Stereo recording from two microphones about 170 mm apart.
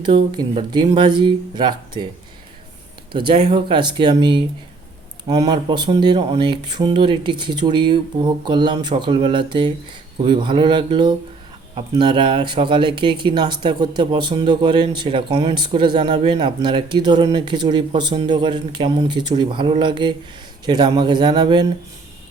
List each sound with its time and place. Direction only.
0.0 s speech: 25° right (ahead or behind)
3.1 s speech: 30° right (ahead or behind)